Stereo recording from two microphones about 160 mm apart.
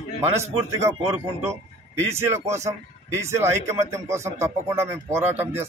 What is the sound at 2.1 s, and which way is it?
A man's voice, 15° right (ahead or behind).